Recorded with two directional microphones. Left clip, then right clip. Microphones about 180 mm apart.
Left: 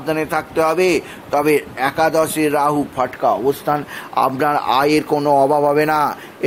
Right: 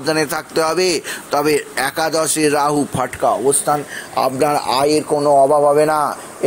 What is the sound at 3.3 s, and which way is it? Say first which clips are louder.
Speech: right 3 dB; 20° left (ahead or behind).